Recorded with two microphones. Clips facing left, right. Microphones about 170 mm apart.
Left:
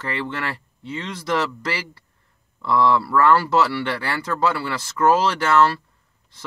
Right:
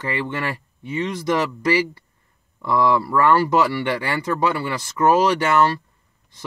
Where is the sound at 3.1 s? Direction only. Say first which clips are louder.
Even; 15° right (ahead or behind).